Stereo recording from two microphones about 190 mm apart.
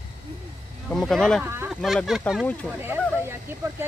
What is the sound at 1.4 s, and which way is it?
Speech, 10° right (ahead or behind).